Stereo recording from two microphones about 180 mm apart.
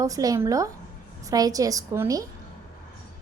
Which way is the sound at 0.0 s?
20° right (ahead or behind).